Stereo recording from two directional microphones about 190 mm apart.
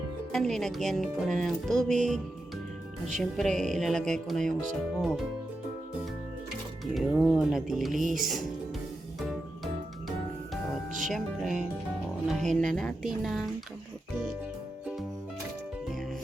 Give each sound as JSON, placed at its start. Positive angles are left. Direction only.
{"t": 0.3, "sound": "speech", "side_deg": 0}
{"t": 3.2, "sound": "speech", "side_deg": 0}
{"t": 6.9, "sound": "speech", "side_deg": 0}
{"t": 11.1, "sound": "speech", "side_deg": 0}